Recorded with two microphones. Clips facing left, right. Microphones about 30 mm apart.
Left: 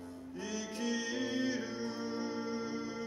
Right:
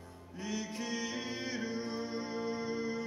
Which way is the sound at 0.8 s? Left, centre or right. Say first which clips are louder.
Left 6 dB; centre.